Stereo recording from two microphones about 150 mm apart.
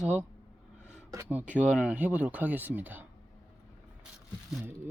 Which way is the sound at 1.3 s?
10° right (ahead or behind).